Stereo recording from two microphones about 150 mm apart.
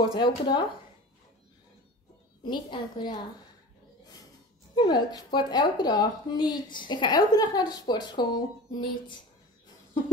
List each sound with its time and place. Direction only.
0.1 s speech: 30° left (ahead or behind)
2.4 s a woman's voice: 30° left (ahead or behind)
4.7 s a woman's voice: 30° left (ahead or behind)